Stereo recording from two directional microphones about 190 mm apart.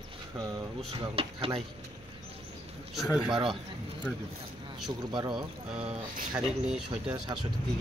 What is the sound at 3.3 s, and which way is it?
Speech, 25° right (ahead or behind).